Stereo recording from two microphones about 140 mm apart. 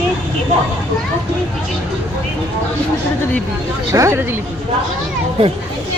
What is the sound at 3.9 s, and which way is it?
Speech, 20° right (ahead or behind).